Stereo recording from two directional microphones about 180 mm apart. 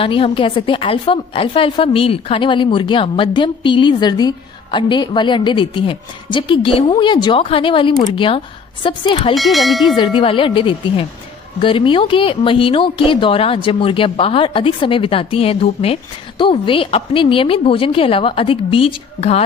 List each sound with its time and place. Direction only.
0.0 s a woman's voice: 30° left (ahead or behind)
9.3 s bell: centre (ahead or behind)
9.9 s a woman's voice: 25° left (ahead or behind)